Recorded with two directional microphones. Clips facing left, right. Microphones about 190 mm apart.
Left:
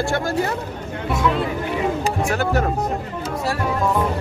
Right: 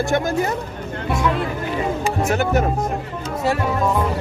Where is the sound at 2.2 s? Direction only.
20° right (ahead or behind).